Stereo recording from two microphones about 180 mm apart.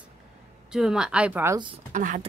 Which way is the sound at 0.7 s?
5° right (ahead or behind).